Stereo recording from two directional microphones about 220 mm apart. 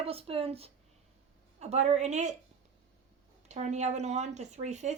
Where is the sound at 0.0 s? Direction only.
25° right (ahead or behind).